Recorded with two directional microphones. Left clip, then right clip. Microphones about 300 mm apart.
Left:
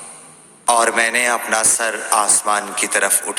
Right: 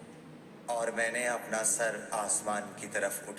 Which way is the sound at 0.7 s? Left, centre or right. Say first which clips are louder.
Left 17 dB; left.